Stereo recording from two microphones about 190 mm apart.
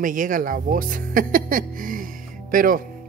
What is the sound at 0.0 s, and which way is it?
Speech, 45° right (ahead or behind).